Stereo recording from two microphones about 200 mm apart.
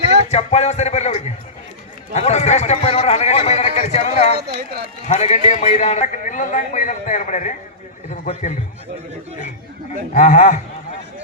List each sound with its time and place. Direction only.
0.3 s speech: 30° left (ahead or behind)
2.1 s speech: 35° left (ahead or behind)
4.4 s speech: 55° right (ahead or behind)
5.0 s speech: 35° left (ahead or behind)
10.2 s speech: 40° left (ahead or behind)